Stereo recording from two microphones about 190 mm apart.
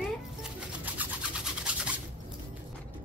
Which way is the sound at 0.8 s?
5° right (ahead or behind).